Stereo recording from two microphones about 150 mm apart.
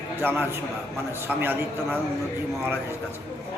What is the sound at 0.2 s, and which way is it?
A man's voice, 15° right (ahead or behind).